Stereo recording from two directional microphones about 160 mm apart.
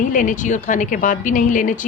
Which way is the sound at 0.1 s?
55° left (ahead or behind).